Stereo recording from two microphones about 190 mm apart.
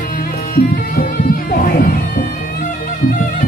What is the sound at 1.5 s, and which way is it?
Music, 50° left (ahead or behind).